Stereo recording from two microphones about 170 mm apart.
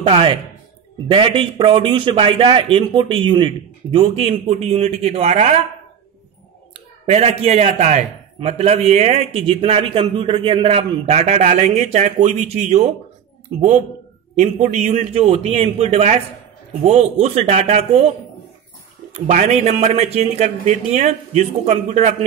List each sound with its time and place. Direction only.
0.0 s a man's voice: 30° right (ahead or behind)
7.1 s a man's voice: 35° right (ahead or behind)
19.1 s a man's voice: 45° right (ahead or behind)